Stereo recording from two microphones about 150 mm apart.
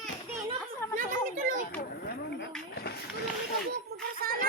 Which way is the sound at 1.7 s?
90° left.